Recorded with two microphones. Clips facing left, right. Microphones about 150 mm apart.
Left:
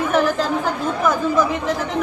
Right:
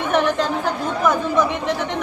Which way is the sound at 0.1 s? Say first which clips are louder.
Right 2 dB; centre (ahead or behind).